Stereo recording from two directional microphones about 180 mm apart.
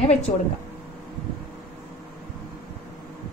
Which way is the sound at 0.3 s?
40° left (ahead or behind).